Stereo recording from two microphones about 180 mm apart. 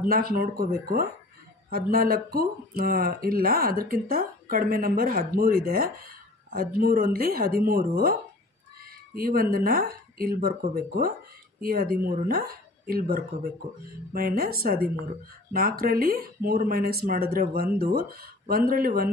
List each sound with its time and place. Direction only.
0.1 s speech: 55° right (ahead or behind)